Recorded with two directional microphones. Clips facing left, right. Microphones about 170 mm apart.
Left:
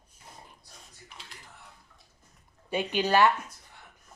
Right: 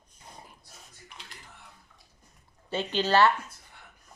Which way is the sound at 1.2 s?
Centre (ahead or behind).